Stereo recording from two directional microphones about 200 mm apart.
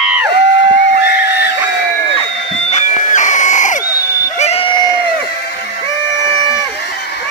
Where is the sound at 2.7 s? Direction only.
40° left (ahead or behind).